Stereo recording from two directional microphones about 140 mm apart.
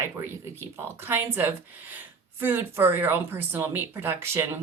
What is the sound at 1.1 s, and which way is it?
Speech, 15° right (ahead or behind).